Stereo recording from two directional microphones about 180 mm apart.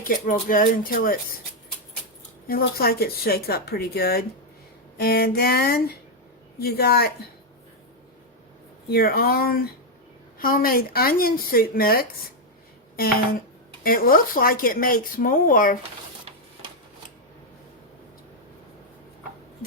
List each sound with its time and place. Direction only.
0.0 s speech: 50° left (ahead or behind)
2.5 s speech: 55° left (ahead or behind)
8.9 s speech: 55° left (ahead or behind)